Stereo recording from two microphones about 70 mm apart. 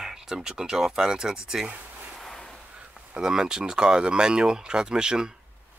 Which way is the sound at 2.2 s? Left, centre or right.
Centre.